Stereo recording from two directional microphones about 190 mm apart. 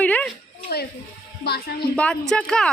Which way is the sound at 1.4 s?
55° left (ahead or behind).